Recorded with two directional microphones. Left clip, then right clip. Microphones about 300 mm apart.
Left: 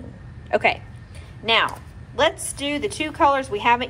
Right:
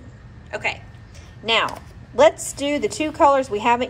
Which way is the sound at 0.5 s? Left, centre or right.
Centre.